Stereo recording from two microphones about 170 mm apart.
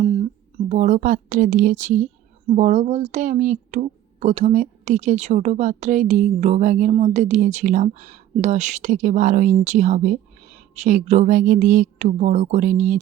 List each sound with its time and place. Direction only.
0.0 s speech: 40° right (ahead or behind)